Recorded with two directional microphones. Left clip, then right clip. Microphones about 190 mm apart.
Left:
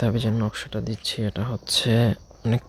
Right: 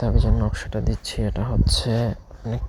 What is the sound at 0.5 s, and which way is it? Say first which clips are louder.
Speech: right 2 dB; 5° left (ahead or behind).